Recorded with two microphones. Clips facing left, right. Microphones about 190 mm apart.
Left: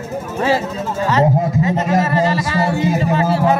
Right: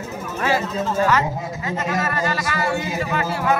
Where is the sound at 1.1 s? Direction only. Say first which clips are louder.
Left 6 dB; 35° left (ahead or behind).